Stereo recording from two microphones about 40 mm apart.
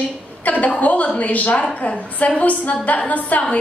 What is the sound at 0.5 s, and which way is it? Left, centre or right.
A woman's voice, left.